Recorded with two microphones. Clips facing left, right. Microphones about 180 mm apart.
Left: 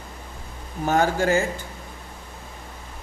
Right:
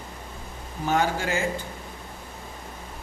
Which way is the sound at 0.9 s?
45° left (ahead or behind).